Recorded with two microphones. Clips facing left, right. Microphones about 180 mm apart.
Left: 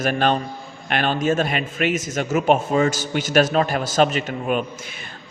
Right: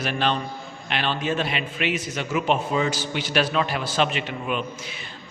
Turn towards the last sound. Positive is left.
turn(degrees=45)  # may be behind; listen again after turning